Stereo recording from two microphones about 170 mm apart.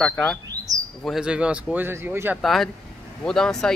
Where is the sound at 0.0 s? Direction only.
5° left (ahead or behind).